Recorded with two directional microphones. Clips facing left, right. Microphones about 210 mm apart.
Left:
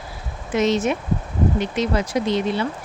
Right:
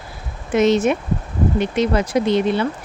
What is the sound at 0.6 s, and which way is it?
Speech, 55° right (ahead or behind).